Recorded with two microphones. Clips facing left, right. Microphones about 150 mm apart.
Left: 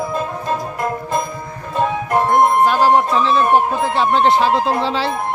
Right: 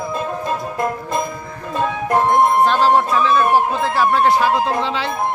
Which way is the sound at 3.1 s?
30° left (ahead or behind).